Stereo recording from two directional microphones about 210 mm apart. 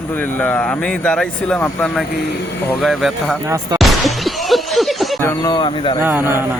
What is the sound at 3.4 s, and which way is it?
Speech, 15° right (ahead or behind).